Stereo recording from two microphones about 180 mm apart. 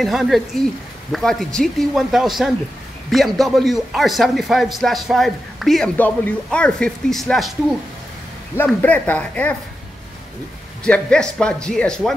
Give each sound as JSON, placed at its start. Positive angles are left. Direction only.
{"t": 0.0, "sound": "speech", "side_deg": 0}
{"t": 8.6, "sound": "speech", "side_deg": 10}
{"t": 10.8, "sound": "speech", "side_deg": 5}